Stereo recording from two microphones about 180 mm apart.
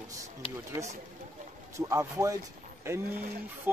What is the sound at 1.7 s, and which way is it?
Speech, 15° right (ahead or behind).